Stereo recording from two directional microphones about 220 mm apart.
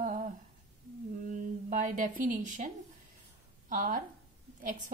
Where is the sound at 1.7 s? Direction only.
35° right (ahead or behind).